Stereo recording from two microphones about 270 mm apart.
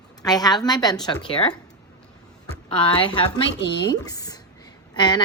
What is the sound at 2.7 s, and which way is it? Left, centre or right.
A woman's voice, centre.